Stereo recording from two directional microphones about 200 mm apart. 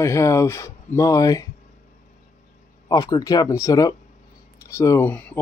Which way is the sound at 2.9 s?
20° left (ahead or behind).